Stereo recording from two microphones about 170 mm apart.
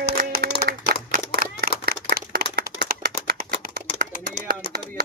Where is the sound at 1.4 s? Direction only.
60° right (ahead or behind).